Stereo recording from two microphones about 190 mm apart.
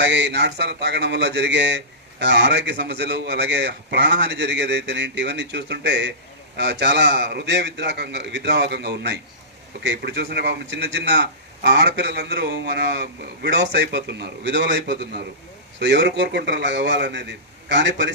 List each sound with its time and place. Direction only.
0.0 s a man's voice: 65° right (ahead or behind)